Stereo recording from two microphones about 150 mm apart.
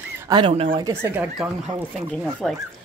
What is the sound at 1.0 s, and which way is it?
Speech, 10° right (ahead or behind).